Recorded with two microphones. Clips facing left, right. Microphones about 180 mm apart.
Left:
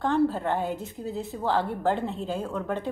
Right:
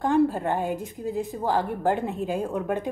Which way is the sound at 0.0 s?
10° right (ahead or behind).